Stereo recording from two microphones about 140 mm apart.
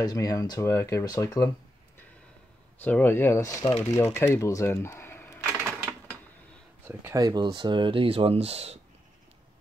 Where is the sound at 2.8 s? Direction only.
15° left (ahead or behind).